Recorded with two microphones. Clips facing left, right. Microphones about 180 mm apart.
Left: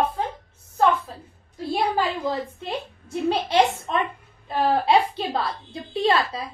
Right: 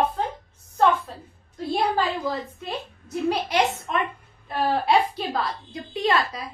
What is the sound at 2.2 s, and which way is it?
A woman's voice, 25° left (ahead or behind).